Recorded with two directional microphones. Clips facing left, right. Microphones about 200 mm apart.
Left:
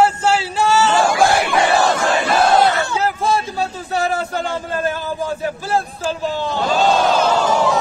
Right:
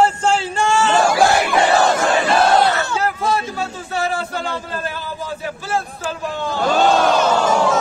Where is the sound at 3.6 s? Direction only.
40° left (ahead or behind).